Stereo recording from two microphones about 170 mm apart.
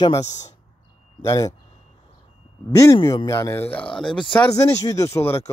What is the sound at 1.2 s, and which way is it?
Speech, 20° left (ahead or behind).